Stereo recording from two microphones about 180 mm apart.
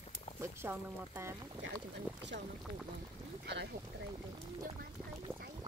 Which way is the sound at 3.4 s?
70° right (ahead or behind).